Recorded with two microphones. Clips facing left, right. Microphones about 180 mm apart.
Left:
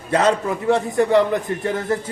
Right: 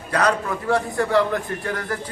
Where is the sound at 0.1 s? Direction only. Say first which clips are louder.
Left 3 dB; 25° left (ahead or behind).